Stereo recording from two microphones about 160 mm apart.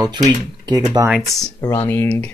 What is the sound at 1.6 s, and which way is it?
Speech, 15° left (ahead or behind).